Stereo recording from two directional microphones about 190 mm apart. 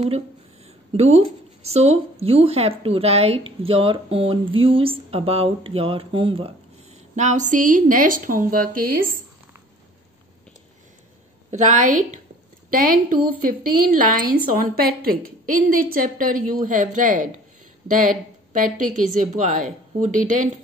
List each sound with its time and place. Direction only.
0.9 s speech: 35° right (ahead or behind)
7.2 s a woman's voice: 40° right (ahead or behind)
11.5 s a woman's voice: 40° right (ahead or behind)